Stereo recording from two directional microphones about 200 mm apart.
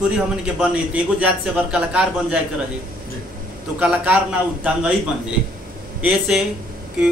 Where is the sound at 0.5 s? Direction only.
5° right (ahead or behind).